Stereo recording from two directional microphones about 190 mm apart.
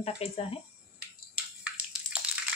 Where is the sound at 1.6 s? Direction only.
5° right (ahead or behind).